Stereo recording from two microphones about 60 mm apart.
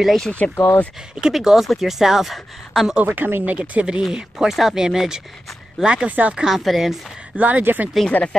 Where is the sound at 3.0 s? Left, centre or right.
Right.